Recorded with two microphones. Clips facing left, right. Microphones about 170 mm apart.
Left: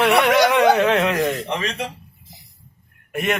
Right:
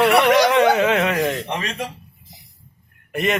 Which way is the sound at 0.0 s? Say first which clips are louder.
Right 1 dB; centre (ahead or behind).